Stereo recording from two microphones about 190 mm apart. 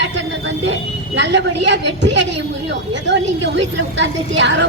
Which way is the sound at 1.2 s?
65° right (ahead or behind).